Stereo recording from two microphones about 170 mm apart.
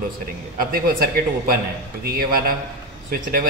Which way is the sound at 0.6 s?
60° right (ahead or behind).